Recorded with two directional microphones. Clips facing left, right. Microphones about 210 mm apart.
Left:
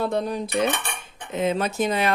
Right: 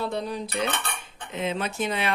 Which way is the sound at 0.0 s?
50° left (ahead or behind).